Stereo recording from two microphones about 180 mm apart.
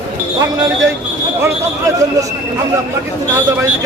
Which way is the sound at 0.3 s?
20° right (ahead or behind).